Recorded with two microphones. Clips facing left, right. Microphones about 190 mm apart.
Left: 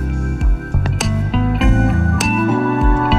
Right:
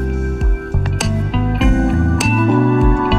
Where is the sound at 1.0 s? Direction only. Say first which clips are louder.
Left 1 dB; centre (ahead or behind).